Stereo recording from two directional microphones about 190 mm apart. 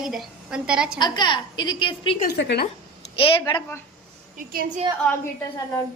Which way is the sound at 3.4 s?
15° left (ahead or behind).